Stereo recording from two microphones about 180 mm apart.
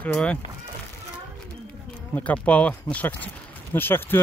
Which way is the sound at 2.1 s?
10° left (ahead or behind).